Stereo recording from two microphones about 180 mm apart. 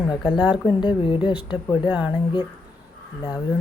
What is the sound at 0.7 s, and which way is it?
Speech, 25° left (ahead or behind).